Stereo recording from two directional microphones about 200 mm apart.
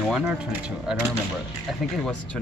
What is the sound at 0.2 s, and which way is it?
Speech, 5° right (ahead or behind).